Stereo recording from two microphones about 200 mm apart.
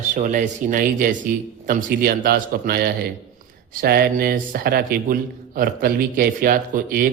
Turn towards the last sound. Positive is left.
turn(degrees=-45)  # may be behind; listen again after turning